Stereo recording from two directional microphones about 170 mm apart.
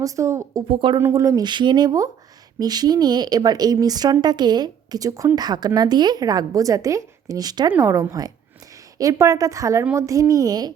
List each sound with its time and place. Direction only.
0.0 s speech: 20° right (ahead or behind)
0.7 s speech: 30° right (ahead or behind)
0.9 s a woman's voice: 15° right (ahead or behind)